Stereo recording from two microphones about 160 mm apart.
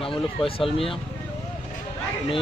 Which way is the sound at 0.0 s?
35° left (ahead or behind).